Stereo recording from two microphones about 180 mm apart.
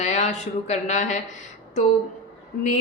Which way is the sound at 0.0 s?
40° left (ahead or behind).